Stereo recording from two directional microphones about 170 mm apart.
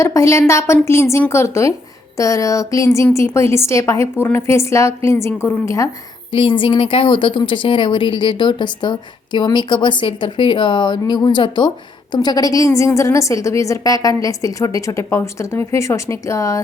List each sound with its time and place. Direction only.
0.0 s a woman's voice: 15° left (ahead or behind)
6.3 s speech: 30° left (ahead or behind)